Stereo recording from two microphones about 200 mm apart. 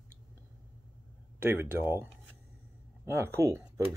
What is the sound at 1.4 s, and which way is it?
Speech, 10° right (ahead or behind).